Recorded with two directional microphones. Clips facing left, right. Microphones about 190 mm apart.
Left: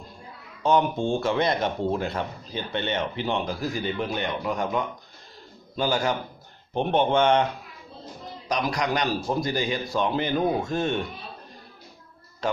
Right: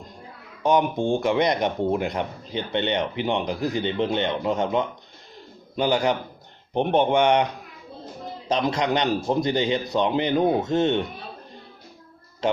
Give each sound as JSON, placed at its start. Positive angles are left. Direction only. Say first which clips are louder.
{"t": 0.6, "sound": "a man's voice", "louder": "right 1 dB", "side_deg": -15}
{"t": 8.5, "sound": "a man's voice", "louder": "right 3 dB", "side_deg": -25}